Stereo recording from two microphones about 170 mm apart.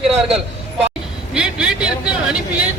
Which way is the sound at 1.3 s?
5° right (ahead or behind).